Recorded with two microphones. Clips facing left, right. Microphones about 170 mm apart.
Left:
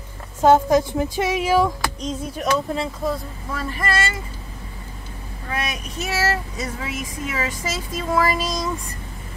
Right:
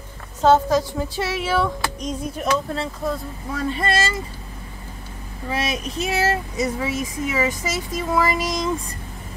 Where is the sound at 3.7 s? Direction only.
25° right (ahead or behind).